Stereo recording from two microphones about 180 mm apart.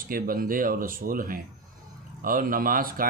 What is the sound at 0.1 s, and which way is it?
Speech, 50° right (ahead or behind).